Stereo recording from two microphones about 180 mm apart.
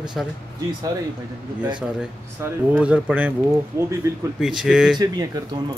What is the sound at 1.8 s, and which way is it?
Speech, 10° right (ahead or behind).